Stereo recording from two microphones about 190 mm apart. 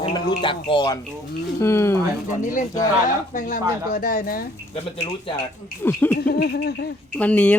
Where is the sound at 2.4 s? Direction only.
40° left (ahead or behind).